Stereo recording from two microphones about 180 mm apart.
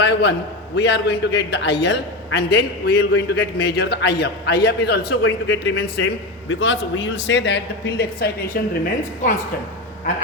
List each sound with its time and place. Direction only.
0.0 s a sound: 75° left (ahead or behind)
0.8 s a man's voice: 70° left (ahead or behind)
6.5 s a man's voice: 90° left; by 8.6 s 60° left (ahead or behind)
9.2 s a woman's voice: 45° left (ahead or behind)